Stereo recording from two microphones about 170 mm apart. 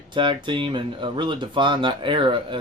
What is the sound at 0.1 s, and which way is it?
Speech, 30° right (ahead or behind).